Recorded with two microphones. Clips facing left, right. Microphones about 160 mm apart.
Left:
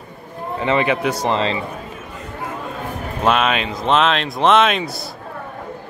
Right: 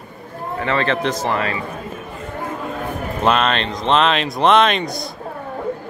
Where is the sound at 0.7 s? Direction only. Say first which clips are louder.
Left 2 dB; 15° left (ahead or behind).